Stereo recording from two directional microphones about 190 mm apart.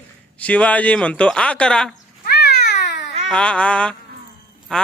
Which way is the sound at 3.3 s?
5° left (ahead or behind).